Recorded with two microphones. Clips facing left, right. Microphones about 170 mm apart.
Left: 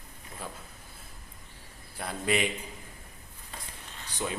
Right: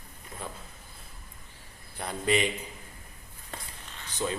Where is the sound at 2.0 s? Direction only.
5° left (ahead or behind).